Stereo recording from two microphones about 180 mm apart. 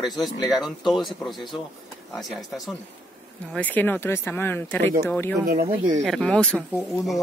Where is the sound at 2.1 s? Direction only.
Centre (ahead or behind).